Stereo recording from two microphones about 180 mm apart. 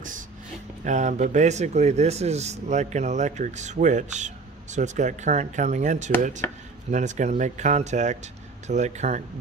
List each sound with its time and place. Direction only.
0.8 s speech: 40° right (ahead or behind)